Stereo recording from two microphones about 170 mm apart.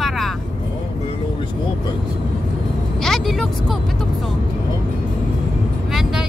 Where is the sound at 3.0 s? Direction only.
Centre (ahead or behind).